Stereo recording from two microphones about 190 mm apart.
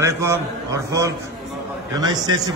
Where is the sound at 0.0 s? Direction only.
15° right (ahead or behind).